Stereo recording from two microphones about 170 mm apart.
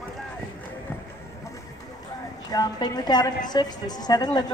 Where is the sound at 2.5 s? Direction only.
25° left (ahead or behind).